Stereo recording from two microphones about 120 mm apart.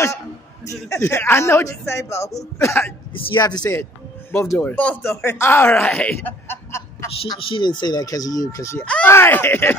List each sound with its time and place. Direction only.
0.7 s a man's voice: 25° left (ahead or behind)
4.3 s speech: 20° left (ahead or behind)
7.3 s speech: 45° left (ahead or behind); by 8.8 s 25° left (ahead or behind)
8.8 s a man's voice: 10° left (ahead or behind)